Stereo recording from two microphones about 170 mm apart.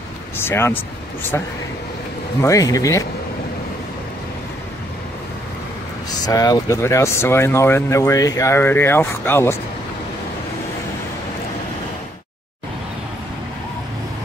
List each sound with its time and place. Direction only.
0.4 s speech: 15° left (ahead or behind)
6.0 s speech: 20° left (ahead or behind)